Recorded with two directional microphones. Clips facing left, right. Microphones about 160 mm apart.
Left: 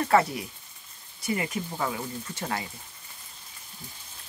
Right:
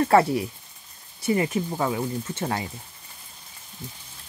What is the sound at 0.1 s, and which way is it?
Speech, 30° right (ahead or behind).